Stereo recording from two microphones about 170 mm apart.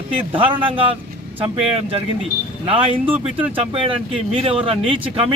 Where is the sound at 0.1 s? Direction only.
35° right (ahead or behind).